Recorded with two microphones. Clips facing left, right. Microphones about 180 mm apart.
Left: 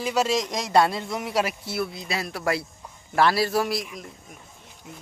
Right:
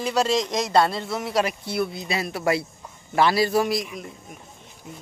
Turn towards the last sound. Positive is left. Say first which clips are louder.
# right 3 dB
turn(degrees=0)  # may be behind; listen again after turning